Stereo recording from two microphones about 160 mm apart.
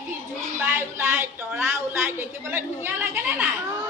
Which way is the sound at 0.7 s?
15° right (ahead or behind).